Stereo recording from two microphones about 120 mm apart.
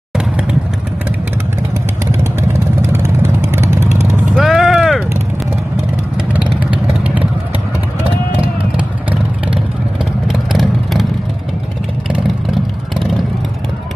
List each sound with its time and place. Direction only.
2.9 s vehicle: 20° right (ahead or behind)
4.4 s a sound: 5° right (ahead or behind)
6.3 s vehicle: 10° right (ahead or behind)
8.4 s vehicle: 10° right (ahead or behind)